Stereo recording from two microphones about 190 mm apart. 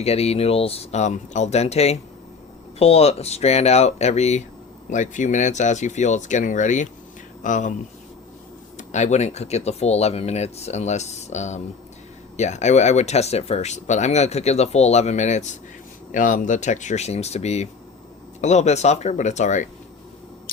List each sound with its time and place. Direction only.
0.0 s speech: 30° left (ahead or behind)
8.9 s speech: 40° left (ahead or behind)